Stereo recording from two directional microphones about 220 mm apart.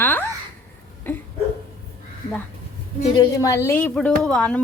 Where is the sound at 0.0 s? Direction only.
10° left (ahead or behind).